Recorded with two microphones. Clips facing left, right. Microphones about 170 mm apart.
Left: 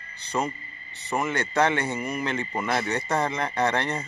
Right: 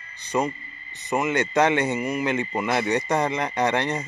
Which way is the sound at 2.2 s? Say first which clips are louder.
Right 3 dB; 15° right (ahead or behind).